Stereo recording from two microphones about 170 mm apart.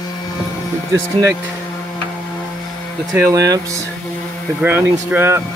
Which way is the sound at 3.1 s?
20° right (ahead or behind).